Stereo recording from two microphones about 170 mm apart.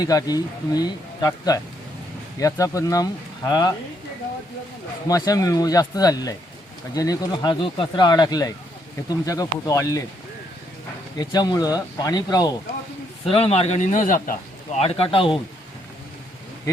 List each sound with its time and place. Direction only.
0.0 s speech: 20° left (ahead or behind)
5.0 s speech: 20° left (ahead or behind)
11.2 s speech: 25° left (ahead or behind)
13.3 s a man's voice: 35° left (ahead or behind)
14.8 s speech: 35° left (ahead or behind)